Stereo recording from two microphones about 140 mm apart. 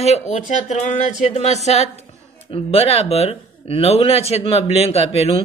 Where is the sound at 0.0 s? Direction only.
50° left (ahead or behind).